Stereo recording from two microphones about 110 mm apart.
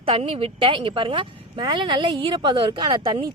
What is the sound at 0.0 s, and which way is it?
A woman's voice, 60° right (ahead or behind).